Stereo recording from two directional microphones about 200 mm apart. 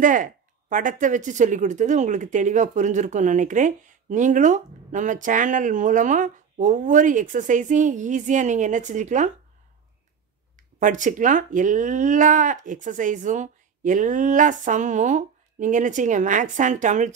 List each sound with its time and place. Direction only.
0.0 s speech: 40° right (ahead or behind)
10.5 s speech: 40° right (ahead or behind)